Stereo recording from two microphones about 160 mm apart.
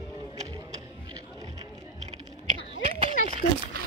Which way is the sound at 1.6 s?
40° right (ahead or behind).